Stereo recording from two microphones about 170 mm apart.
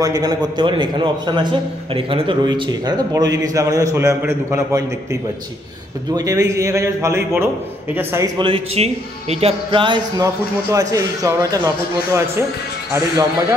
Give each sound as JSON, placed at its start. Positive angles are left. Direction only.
{"t": 0.0, "sound": "a man's voice", "side_deg": -20}
{"t": 6.1, "sound": "speech", "side_deg": -20}
{"t": 8.4, "sound": "a man's voice", "side_deg": -30}